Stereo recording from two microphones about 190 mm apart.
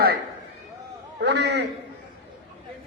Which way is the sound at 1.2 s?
65° right (ahead or behind).